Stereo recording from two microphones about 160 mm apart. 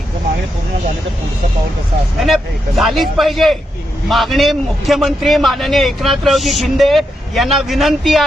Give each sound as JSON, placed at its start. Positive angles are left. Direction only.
{"t": 2.2, "sound": "a man's voice", "side_deg": 0}